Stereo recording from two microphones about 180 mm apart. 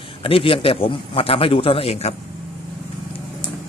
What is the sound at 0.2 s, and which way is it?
Speech, 30° left (ahead or behind).